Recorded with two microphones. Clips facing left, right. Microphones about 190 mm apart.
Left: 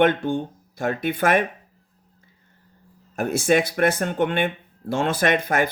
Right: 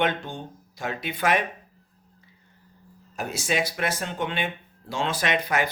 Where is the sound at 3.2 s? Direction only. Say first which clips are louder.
Left 8 dB; 55° left (ahead or behind).